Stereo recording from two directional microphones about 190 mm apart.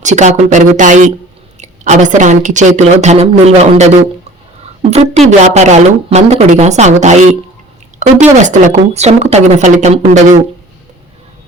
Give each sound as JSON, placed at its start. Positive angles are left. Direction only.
{"t": 0.0, "sound": "speech", "side_deg": -40}
{"t": 4.9, "sound": "speech", "side_deg": -30}